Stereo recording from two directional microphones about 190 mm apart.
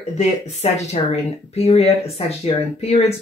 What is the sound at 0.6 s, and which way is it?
Speech, 35° left (ahead or behind).